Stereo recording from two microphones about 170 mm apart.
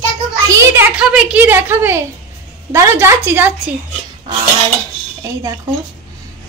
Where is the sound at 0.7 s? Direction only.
5° right (ahead or behind).